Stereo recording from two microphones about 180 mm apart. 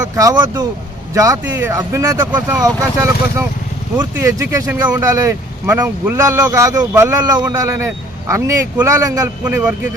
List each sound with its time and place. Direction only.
0.0 s speech: 20° right (ahead or behind)